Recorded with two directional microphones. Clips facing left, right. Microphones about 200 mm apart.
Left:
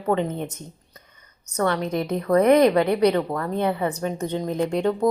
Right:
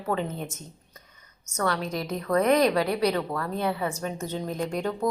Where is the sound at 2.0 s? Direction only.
20° left (ahead or behind).